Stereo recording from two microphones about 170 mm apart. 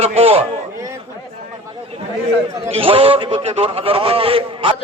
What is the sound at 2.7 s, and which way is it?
A man's voice, 35° right (ahead or behind).